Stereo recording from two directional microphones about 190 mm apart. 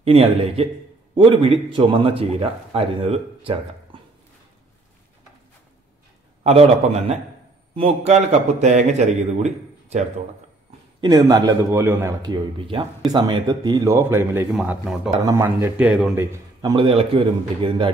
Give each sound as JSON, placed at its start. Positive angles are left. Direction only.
{"t": 0.0, "sound": "a man's voice", "side_deg": -30}
{"t": 7.7, "sound": "a man's voice", "side_deg": -30}
{"t": 11.0, "sound": "a man's voice", "side_deg": -20}
{"t": 14.5, "sound": "speech", "side_deg": 0}
{"t": 15.2, "sound": "a man's voice", "side_deg": -15}
{"t": 16.7, "sound": "a man's voice", "side_deg": -30}